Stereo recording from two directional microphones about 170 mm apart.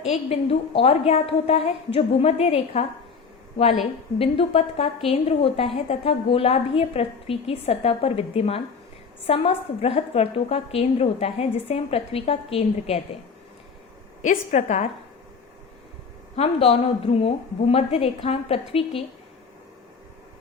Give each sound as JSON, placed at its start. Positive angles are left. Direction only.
{"t": 0.0, "sound": "a woman's voice", "side_deg": 40}
{"t": 4.2, "sound": "a woman's voice", "side_deg": 35}
{"t": 14.2, "sound": "a woman's voice", "side_deg": 45}
{"t": 16.3, "sound": "a woman's voice", "side_deg": 35}